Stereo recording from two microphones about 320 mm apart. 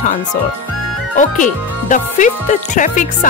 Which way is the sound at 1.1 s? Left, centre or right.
Left.